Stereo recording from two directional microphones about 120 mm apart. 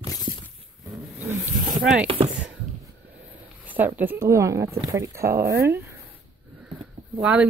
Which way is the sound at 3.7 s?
15° right (ahead or behind).